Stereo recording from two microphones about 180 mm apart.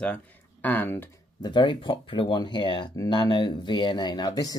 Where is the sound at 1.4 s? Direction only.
25° left (ahead or behind).